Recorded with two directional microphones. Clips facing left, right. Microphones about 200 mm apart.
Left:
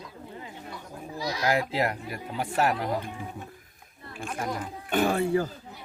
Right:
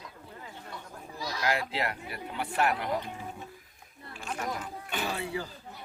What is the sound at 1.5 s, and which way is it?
Speech, 40° left (ahead or behind).